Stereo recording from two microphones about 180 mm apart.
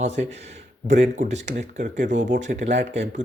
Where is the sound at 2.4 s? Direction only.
40° right (ahead or behind).